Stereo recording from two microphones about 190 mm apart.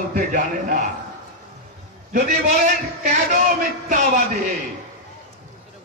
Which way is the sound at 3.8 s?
40° right (ahead or behind).